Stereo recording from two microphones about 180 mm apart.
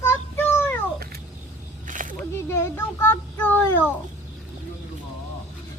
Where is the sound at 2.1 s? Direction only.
15° left (ahead or behind).